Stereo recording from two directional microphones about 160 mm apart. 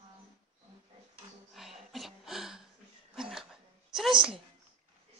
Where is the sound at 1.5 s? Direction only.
Centre (ahead or behind).